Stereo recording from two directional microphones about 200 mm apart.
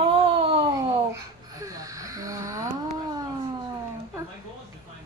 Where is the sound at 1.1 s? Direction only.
15° right (ahead or behind).